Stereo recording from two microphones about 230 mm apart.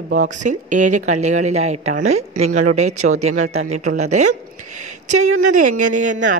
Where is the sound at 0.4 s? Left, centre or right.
Right.